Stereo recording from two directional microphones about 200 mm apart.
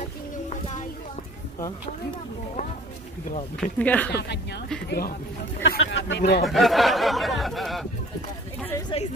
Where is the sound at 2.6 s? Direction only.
40° left (ahead or behind).